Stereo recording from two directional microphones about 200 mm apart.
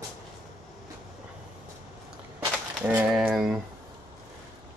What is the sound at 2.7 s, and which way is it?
Speech, 5° right (ahead or behind).